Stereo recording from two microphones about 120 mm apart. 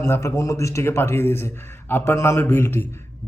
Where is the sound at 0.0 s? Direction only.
20° left (ahead or behind).